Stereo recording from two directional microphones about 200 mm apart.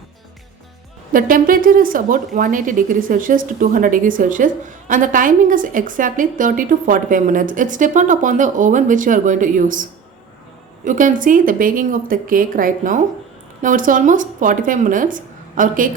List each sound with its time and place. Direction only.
1.1 s speech: 45° right (ahead or behind)
10.8 s a woman's voice: 40° right (ahead or behind)